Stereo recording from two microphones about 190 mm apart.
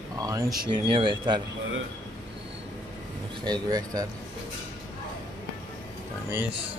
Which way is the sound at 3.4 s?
20° right (ahead or behind).